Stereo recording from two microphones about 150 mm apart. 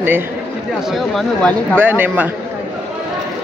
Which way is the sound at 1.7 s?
10° right (ahead or behind).